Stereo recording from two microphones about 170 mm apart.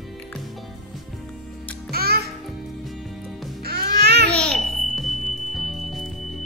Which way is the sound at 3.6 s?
65° right (ahead or behind).